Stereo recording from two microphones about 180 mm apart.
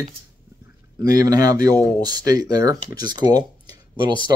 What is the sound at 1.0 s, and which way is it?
Speech, 20° right (ahead or behind).